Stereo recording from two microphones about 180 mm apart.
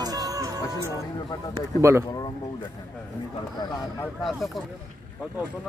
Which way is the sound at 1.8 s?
15° right (ahead or behind).